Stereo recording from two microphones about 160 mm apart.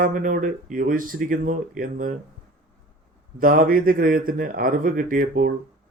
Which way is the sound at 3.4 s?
60° right (ahead or behind).